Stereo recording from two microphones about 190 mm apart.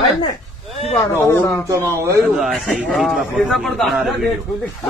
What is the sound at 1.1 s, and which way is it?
Speech, 15° left (ahead or behind).